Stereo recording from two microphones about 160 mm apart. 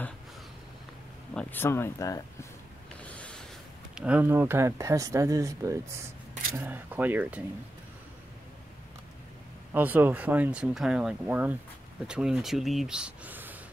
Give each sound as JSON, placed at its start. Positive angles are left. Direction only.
{"t": 1.3, "sound": "speech", "side_deg": 10}
{"t": 3.0, "sound": "rub", "side_deg": 10}
{"t": 3.9, "sound": "speech", "side_deg": -10}
{"t": 9.7, "sound": "speech", "side_deg": -10}